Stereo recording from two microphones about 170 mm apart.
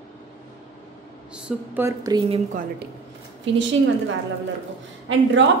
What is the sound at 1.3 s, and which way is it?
Speech, 10° right (ahead or behind).